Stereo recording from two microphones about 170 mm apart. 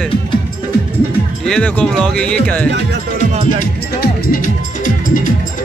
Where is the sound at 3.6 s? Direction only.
55° left (ahead or behind).